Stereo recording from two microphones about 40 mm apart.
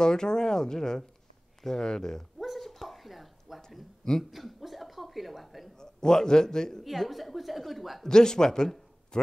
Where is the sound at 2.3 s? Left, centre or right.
Centre.